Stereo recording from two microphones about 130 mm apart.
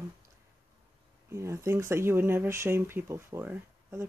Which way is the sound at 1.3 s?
20° right (ahead or behind).